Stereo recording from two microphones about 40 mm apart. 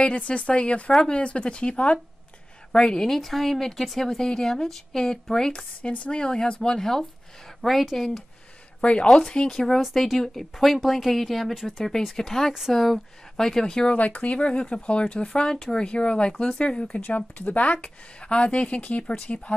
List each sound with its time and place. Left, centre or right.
0.0 s speech: left
2.7 s speech: centre
4.2 s speech: centre
5.8 s speech: left
6.8 s speech: centre
7.6 s speech: centre
9.0 s speech: centre
13.8 s speech: left; by 15.8 s centre
15.8 s speech: left
17.1 s speech: left
17.7 s speech: left
18.8 s speech: left